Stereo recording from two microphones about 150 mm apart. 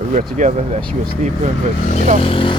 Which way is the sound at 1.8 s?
55° left (ahead or behind).